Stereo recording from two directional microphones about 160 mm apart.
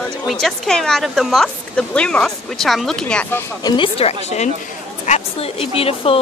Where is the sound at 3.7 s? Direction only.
35° left (ahead or behind).